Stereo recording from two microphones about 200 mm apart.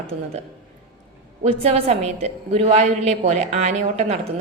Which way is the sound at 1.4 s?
30° right (ahead or behind).